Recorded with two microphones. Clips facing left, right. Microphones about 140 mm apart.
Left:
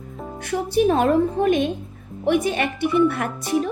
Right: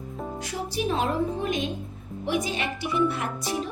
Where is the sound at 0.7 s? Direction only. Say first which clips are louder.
Left 9 dB; 55° left (ahead or behind).